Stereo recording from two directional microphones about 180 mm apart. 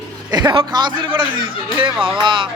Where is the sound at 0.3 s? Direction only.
25° right (ahead or behind).